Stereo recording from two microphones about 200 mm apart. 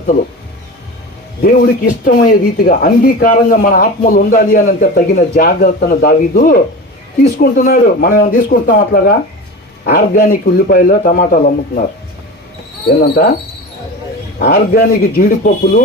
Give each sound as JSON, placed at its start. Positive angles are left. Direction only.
{"t": 1.4, "sound": "speech", "side_deg": 50}
{"t": 14.3, "sound": "speech", "side_deg": 45}